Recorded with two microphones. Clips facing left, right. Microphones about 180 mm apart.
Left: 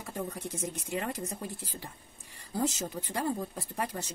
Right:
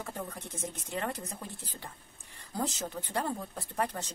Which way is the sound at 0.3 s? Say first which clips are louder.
Left 4 dB; 10° left (ahead or behind).